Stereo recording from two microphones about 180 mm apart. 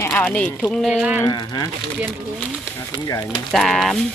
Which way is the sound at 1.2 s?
25° left (ahead or behind).